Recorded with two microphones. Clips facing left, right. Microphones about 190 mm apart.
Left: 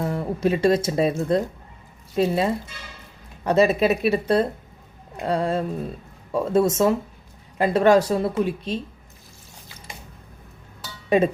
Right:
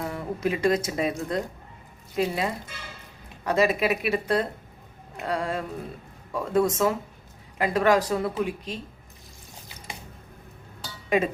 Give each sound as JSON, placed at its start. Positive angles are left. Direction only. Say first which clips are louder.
{"t": 0.0, "sound": "speech", "louder": "left 5 dB", "side_deg": 30}